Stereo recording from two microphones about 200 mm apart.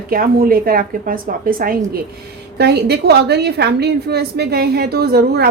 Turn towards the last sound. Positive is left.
turn(degrees=-50)  # may be behind; listen again after turning